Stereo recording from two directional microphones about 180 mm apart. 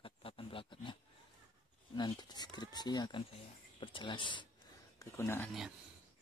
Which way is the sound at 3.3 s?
30° left (ahead or behind).